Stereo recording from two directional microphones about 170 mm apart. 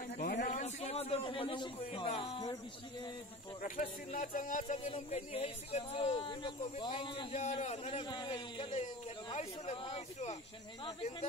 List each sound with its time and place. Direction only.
0.2 s a sound: 50° left (ahead or behind); by 2.0 s 30° left (ahead or behind)
2.0 s speech: 35° left (ahead or behind)
3.8 s music: 45° left (ahead or behind)
4.8 s speech: 35° left (ahead or behind)